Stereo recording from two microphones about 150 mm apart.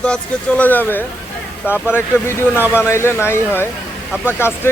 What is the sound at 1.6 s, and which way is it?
Speech, 5° right (ahead or behind).